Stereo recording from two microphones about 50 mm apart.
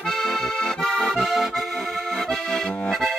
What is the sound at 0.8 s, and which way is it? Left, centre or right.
Accordion, centre.